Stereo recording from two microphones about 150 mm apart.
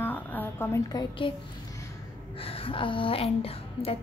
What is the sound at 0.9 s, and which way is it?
Speech, 35° left (ahead or behind).